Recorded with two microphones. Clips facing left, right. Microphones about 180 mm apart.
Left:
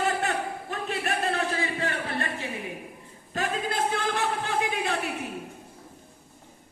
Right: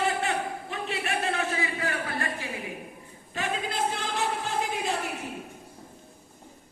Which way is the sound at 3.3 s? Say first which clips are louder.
Left 2 dB; 45° left (ahead or behind).